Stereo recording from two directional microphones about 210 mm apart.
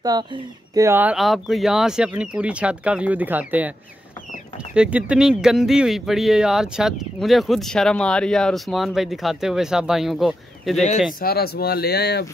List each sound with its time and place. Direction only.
0.0 s speech: 20° right (ahead or behind)
4.7 s speech: 5° right (ahead or behind)
11.1 s speech: 45° left (ahead or behind)